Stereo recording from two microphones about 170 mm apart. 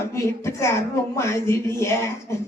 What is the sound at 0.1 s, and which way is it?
A woman's voice, 15° left (ahead or behind).